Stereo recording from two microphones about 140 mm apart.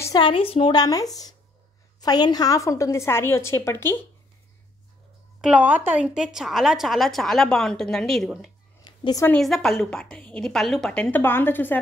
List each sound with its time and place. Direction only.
0.2 s a woman's voice: 40° left (ahead or behind)
0.7 s a woman's voice: 25° left (ahead or behind)
5.4 s a woman's voice: 10° right (ahead or behind)
8.8 s a sound: 30° left (ahead or behind)
9.4 s a woman's voice: centre (ahead or behind)